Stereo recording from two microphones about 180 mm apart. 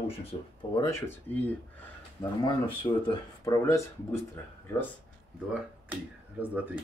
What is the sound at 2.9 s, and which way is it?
Speech, 30° left (ahead or behind).